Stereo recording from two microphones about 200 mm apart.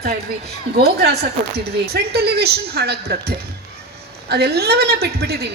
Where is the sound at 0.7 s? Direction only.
55° right (ahead or behind).